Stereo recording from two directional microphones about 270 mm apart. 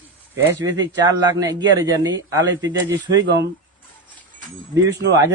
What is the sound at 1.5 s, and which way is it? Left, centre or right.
Speech, centre.